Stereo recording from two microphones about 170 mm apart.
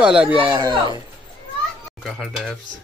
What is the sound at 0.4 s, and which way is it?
Speech, 30° right (ahead or behind).